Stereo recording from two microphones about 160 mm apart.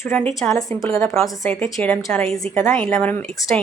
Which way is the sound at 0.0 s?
15° left (ahead or behind).